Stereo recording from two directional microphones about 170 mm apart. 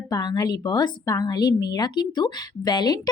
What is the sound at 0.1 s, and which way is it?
A woman's voice, 25° left (ahead or behind).